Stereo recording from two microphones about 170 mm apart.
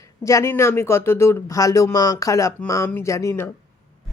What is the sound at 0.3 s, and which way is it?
Speech, 15° left (ahead or behind).